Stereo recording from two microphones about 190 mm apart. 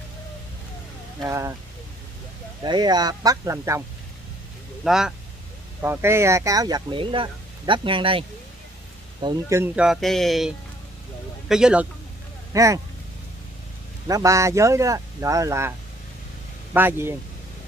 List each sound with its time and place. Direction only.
1.2 s speech: 15° right (ahead or behind)
2.6 s speech: 25° right (ahead or behind)
4.8 s speech: 5° right (ahead or behind)
9.8 s speech: centre (ahead or behind)
12.5 s speech: 15° right (ahead or behind)
14.0 s speech: 15° right (ahead or behind)
16.7 s speech: 10° right (ahead or behind)